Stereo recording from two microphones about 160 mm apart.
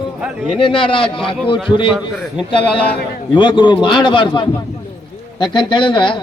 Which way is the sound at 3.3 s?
30° left (ahead or behind).